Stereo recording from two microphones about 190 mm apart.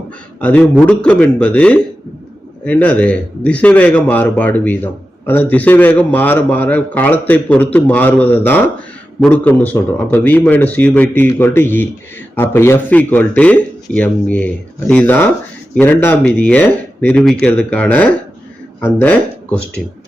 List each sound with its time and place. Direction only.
0.3 s a man's voice: 5° left (ahead or behind)